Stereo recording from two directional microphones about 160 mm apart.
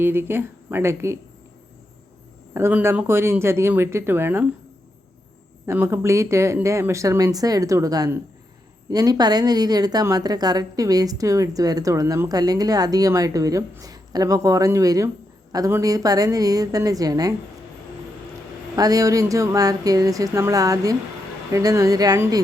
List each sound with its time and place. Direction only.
0.0 s speech: 15° right (ahead or behind)
2.5 s speech: 15° right (ahead or behind)
5.6 s a woman's voice: 15° right (ahead or behind)
18.8 s a woman's voice: 20° right (ahead or behind)